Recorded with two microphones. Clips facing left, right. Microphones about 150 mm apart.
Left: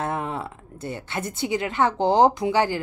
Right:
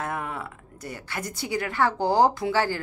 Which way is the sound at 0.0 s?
25° left (ahead or behind).